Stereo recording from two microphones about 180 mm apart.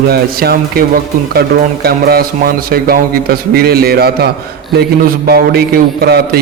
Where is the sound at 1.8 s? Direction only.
60° right (ahead or behind).